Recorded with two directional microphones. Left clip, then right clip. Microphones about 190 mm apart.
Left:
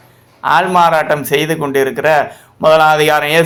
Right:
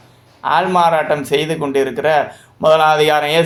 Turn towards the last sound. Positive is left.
turn(degrees=20)  # may be behind; listen again after turning